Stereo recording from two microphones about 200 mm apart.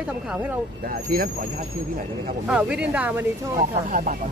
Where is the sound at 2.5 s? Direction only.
5° right (ahead or behind).